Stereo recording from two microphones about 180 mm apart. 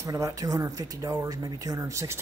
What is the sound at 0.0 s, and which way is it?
Speech, 20° right (ahead or behind).